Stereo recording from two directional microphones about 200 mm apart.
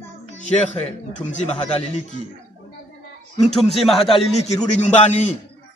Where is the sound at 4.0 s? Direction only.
30° left (ahead or behind).